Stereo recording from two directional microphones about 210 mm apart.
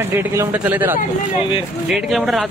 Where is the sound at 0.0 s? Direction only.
10° right (ahead or behind).